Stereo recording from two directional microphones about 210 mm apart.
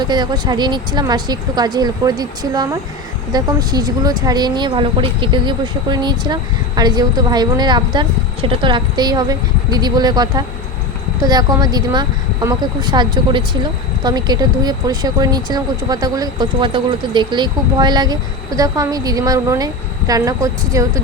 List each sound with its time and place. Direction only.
0.0 s speech: 20° right (ahead or behind)